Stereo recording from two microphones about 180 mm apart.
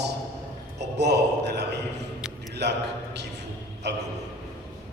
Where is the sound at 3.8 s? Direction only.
70° right (ahead or behind).